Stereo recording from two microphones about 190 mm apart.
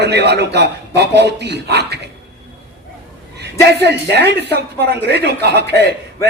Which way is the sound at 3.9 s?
60° right (ahead or behind).